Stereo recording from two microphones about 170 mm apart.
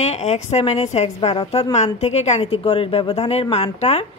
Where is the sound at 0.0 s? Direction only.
40° left (ahead or behind).